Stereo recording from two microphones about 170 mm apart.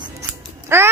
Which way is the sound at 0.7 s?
15° right (ahead or behind).